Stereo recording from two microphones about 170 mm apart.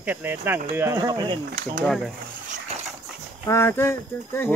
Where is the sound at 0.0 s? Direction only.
10° right (ahead or behind); by 1.4 s 25° right (ahead or behind).